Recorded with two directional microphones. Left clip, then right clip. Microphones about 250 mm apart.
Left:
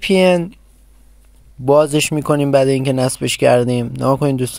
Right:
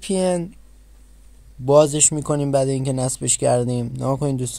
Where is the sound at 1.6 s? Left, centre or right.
Centre.